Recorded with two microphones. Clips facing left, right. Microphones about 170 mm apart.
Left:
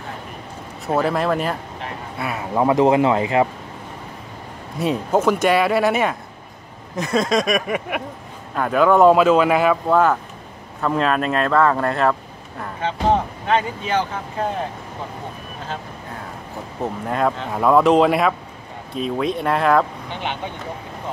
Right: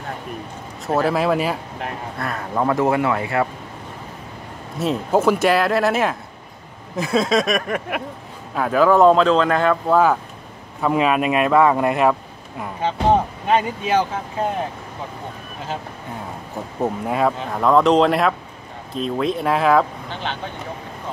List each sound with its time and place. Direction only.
0.8 s speech: centre (ahead or behind)
2.1 s speech: 5° left (ahead or behind)
4.7 s speech: 5° right (ahead or behind)
9.1 s speech: 10° left (ahead or behind)
10.8 s speech: 10° right (ahead or behind)
17.1 s speech: centre (ahead or behind)